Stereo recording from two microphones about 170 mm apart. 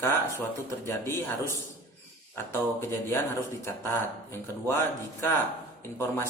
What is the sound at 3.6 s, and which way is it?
Speech, 15° left (ahead or behind).